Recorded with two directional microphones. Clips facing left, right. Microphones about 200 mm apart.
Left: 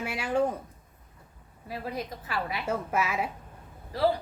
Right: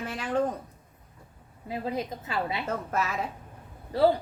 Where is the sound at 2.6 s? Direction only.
10° left (ahead or behind).